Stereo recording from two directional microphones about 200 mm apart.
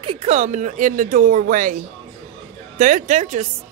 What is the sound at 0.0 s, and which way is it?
Speech, 30° right (ahead or behind).